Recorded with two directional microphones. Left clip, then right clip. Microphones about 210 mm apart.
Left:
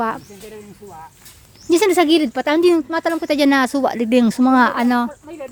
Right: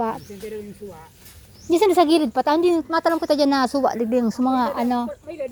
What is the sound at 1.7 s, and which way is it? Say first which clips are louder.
Speech: left 2 dB; 15° left (ahead or behind).